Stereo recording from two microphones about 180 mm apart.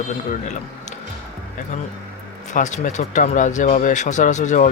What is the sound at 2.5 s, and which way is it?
Speech, 45° left (ahead or behind).